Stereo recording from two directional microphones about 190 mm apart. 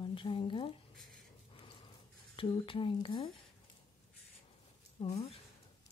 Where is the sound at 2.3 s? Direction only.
25° left (ahead or behind).